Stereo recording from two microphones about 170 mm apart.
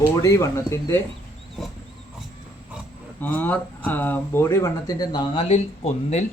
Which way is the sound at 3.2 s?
10° left (ahead or behind).